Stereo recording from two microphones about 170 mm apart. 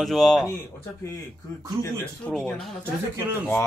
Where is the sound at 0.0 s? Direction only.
Centre (ahead or behind).